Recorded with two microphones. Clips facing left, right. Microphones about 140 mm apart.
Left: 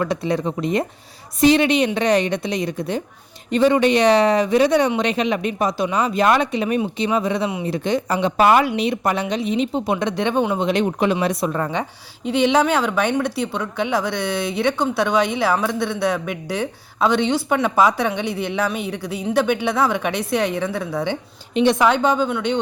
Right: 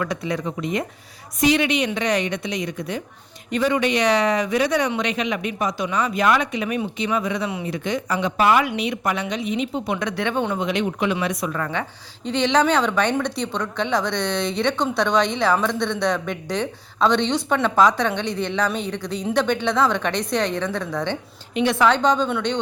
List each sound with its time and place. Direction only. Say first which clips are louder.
0.0 s speech: left 4 dB; 30° left (ahead or behind)
10.7 s a woman's voice: left 4 dB; 35° left (ahead or behind); by 21.2 s 10° left (ahead or behind)
21.5 s a woman's voice: left 2 dB; 20° left (ahead or behind); by 22.5 s 5° left (ahead or behind)